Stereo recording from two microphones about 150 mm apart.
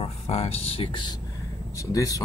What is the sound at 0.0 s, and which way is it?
Speech, 40° left (ahead or behind).